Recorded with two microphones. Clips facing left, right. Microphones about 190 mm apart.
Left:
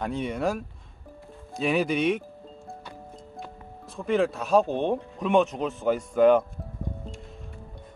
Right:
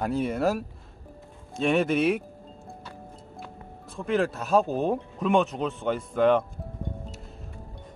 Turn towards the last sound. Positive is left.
turn(degrees=0)  # may be behind; listen again after turning